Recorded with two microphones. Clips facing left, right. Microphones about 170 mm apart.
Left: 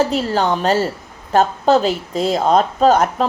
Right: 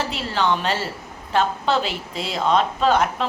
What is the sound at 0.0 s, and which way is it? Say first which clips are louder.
A woman's voice: left 7 dB; 40° left (ahead or behind).